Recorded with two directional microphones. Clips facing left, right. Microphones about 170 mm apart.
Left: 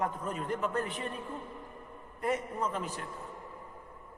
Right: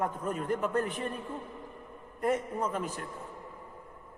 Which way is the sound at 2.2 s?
50° right (ahead or behind).